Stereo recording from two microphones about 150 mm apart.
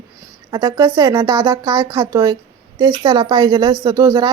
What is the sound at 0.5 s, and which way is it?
A woman's voice, 25° right (ahead or behind).